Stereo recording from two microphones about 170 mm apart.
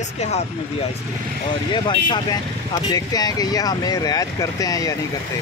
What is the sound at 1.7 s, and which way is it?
Speech, 25° left (ahead or behind).